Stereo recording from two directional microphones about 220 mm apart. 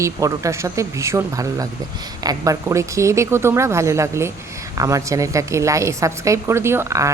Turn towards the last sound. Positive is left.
turn(degrees=-15)  # may be behind; listen again after turning